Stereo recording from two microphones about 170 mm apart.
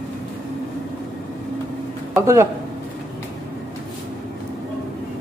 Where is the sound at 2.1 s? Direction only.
15° right (ahead or behind).